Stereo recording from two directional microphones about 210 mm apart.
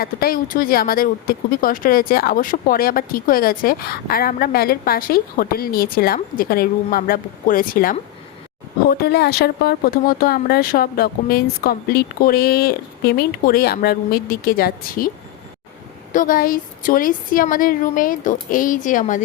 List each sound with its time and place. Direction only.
0.0 s speech: 45° left (ahead or behind)
16.1 s a woman's voice: 40° left (ahead or behind)